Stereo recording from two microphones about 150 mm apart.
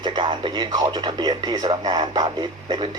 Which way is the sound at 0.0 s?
30° right (ahead or behind).